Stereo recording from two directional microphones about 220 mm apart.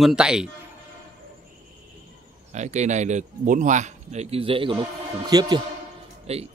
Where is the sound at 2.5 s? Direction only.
30° right (ahead or behind).